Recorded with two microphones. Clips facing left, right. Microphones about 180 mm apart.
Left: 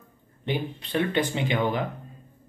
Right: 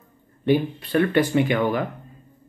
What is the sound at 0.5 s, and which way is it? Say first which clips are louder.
Speech: right 9 dB; 20° left (ahead or behind).